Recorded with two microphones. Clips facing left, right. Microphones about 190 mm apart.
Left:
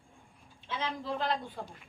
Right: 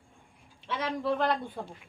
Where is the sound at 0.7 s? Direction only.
70° right (ahead or behind).